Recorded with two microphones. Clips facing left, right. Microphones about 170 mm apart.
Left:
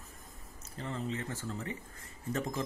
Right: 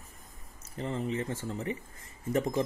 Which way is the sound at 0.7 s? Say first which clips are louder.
Right 5 dB; 20° right (ahead or behind).